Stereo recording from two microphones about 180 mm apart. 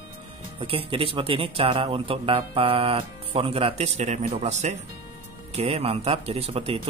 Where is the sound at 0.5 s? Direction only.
30° right (ahead or behind).